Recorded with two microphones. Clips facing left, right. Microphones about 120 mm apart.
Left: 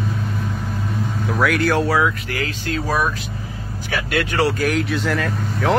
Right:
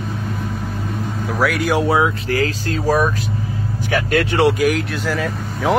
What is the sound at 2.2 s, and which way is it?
Speech, 35° right (ahead or behind).